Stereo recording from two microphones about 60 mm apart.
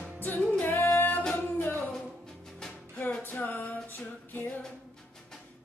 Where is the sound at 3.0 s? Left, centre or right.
Left.